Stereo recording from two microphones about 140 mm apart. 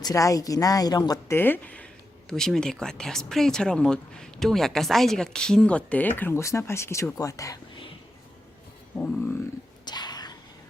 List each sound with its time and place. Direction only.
0.0 s a woman's voice: 25° left (ahead or behind)
1.3 s speech: 15° left (ahead or behind)
9.8 s whispering: 30° left (ahead or behind)